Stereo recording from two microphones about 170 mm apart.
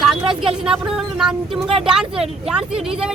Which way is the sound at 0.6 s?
5° right (ahead or behind).